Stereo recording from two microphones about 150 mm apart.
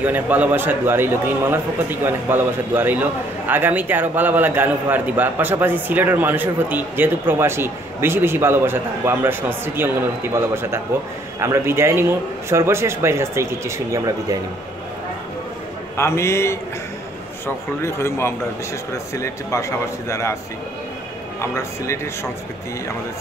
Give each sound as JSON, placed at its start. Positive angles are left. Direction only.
{"t": 0.0, "sound": "a man's voice", "side_deg": -10}
{"t": 16.0, "sound": "a man's voice", "side_deg": 15}
{"t": 17.8, "sound": "a man's voice", "side_deg": 20}
{"t": 21.4, "sound": "speech", "side_deg": 20}